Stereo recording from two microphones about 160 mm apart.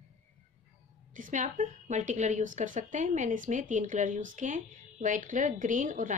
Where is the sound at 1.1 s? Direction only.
50° right (ahead or behind).